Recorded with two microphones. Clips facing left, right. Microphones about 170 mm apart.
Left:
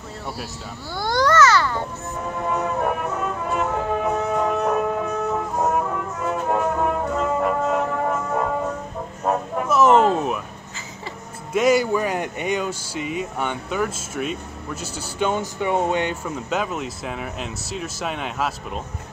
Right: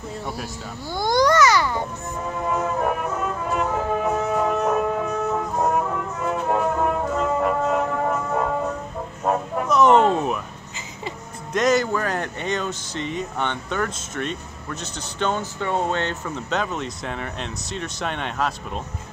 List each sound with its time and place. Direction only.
0.9 s babbling: 15° right (ahead or behind)
2.2 s music: centre (ahead or behind)
9.2 s a sound: centre (ahead or behind)
11.5 s speech: 10° left (ahead or behind)